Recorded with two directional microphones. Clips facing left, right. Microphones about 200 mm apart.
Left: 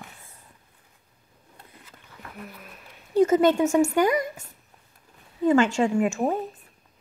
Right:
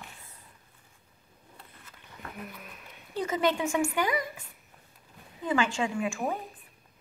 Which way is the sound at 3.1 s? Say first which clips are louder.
Left 10 dB; 45° left (ahead or behind).